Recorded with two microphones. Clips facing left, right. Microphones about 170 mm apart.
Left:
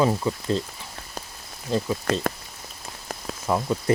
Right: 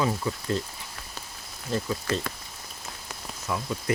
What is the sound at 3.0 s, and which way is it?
Rain on surface, 45° left (ahead or behind).